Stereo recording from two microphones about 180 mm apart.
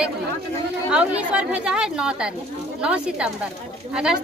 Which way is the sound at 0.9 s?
5° right (ahead or behind).